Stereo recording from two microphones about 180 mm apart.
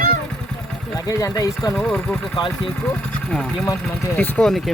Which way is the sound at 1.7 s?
Centre (ahead or behind).